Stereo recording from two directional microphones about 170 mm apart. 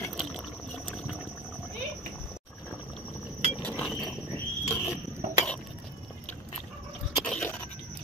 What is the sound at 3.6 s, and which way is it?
Mechanisms, 5° left (ahead or behind).